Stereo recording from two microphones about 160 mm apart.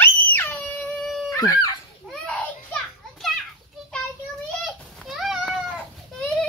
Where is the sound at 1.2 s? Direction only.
20° left (ahead or behind).